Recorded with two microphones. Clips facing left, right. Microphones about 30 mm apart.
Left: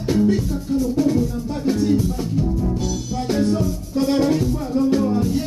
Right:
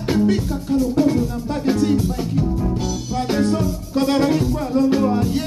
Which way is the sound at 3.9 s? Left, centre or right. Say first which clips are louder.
Right 1 dB; right.